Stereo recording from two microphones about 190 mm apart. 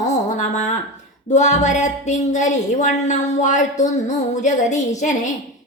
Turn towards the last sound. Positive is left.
turn(degrees=40)  # may be behind; listen again after turning